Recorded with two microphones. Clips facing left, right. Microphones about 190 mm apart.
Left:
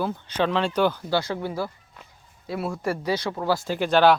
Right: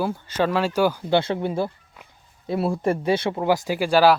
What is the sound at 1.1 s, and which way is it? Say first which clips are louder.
Speech: right 4 dB; 25° right (ahead or behind).